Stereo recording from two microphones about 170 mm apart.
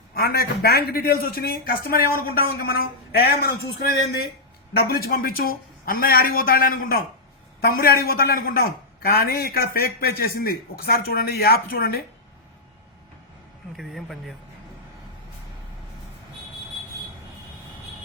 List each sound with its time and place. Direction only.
0.1 s a man's voice: 65° left (ahead or behind)
4.7 s a man's voice: 65° left (ahead or behind)
13.7 s speech: centre (ahead or behind)